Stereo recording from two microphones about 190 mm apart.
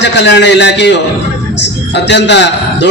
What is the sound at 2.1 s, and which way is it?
Speech, 65° left (ahead or behind).